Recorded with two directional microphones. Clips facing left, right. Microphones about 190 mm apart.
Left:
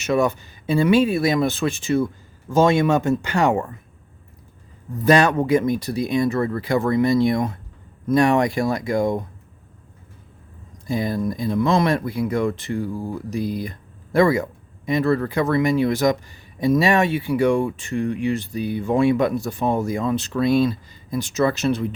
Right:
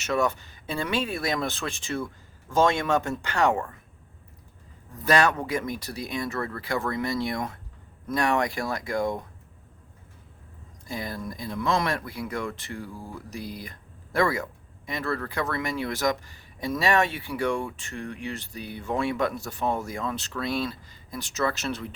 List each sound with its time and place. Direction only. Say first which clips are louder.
0.0 s speech: left 6 dB; 10° left (ahead or behind)
5.0 s speech: left 7 dB; 20° left (ahead or behind)
10.8 s speech: left 11 dB; 20° left (ahead or behind)